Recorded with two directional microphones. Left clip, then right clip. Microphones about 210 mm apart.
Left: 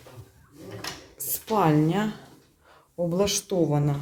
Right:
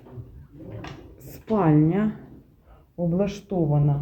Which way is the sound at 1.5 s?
10° left (ahead or behind).